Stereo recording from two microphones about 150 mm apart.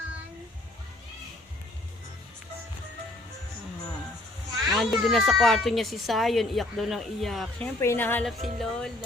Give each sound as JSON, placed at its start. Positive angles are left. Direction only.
{"t": 4.7, "sound": "speech", "side_deg": 0}
{"t": 7.8, "sound": "a woman's voice", "side_deg": 15}
{"t": 8.4, "sound": "speech", "side_deg": 0}